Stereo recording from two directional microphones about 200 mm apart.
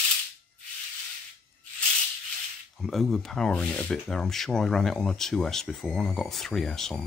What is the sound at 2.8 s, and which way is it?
Speech, centre (ahead or behind).